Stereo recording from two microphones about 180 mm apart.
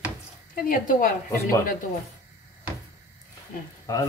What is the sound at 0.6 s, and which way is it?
Speech, 50° left (ahead or behind).